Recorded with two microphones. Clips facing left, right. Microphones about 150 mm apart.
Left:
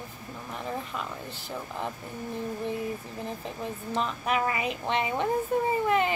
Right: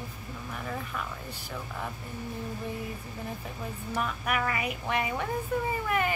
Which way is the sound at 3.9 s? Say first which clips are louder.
Left 2 dB; 25° left (ahead or behind).